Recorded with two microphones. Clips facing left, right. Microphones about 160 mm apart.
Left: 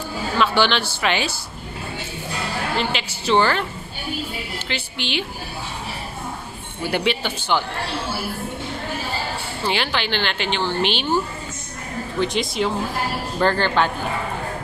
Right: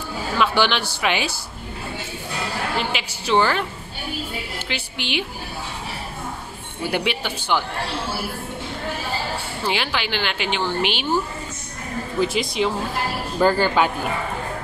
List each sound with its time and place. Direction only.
0.4 s speech: 10° right (ahead or behind)
2.8 s speech: 10° right (ahead or behind)
4.6 s speech: 10° right (ahead or behind)
6.9 s speech: 10° right (ahead or behind)
9.7 s speech: 10° right (ahead or behind)
12.2 s a woman's voice: centre (ahead or behind)